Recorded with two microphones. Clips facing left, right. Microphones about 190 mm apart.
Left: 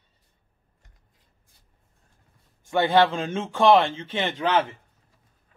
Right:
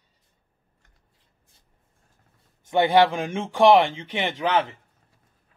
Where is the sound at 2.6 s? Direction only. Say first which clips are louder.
Right 2 dB; 20° right (ahead or behind).